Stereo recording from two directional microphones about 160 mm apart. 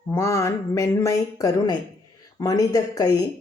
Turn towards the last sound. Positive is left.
turn(degrees=20)  # may be behind; listen again after turning